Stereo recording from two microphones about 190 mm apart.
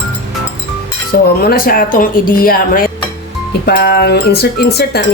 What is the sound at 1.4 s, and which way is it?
Speech, 50° left (ahead or behind).